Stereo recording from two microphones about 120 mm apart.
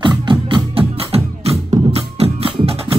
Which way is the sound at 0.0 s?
45° right (ahead or behind).